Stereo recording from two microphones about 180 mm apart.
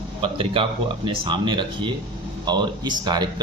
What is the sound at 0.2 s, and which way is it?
Speech, 30° right (ahead or behind).